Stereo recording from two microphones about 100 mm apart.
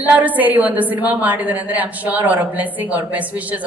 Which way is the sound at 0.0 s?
15° right (ahead or behind).